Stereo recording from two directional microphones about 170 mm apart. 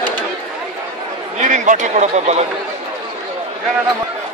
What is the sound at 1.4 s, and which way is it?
A man's voice, 45° right (ahead or behind).